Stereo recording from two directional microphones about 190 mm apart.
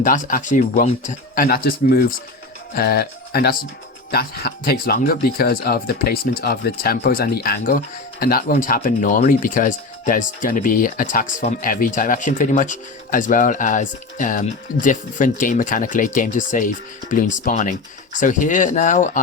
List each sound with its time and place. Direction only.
0.0 s speech: 45° left (ahead or behind)
1.5 s speech: 50° left (ahead or behind)